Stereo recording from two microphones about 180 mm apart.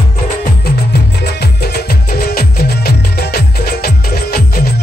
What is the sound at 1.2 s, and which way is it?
Music, 65° left (ahead or behind).